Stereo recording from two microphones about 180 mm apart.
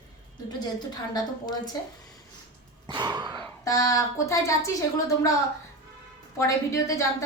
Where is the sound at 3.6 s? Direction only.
20° left (ahead or behind).